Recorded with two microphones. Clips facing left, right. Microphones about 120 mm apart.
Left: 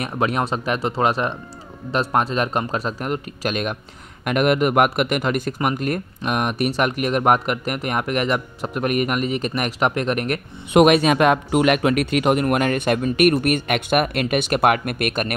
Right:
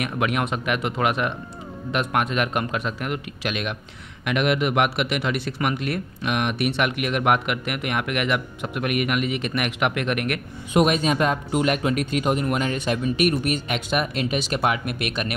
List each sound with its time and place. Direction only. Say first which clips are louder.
0.0 s speech: left 2 dB; 35° left (ahead or behind)
10.7 s a man's voice: left 6 dB; 70° left (ahead or behind); by 15.3 s 50° left (ahead or behind)